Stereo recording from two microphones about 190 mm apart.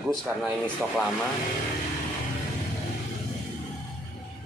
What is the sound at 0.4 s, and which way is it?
Speech, centre (ahead or behind).